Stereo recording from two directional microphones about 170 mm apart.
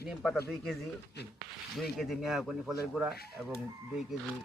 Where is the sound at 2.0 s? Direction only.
Centre (ahead or behind).